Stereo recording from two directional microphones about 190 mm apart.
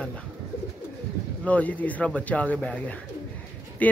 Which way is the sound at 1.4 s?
10° left (ahead or behind).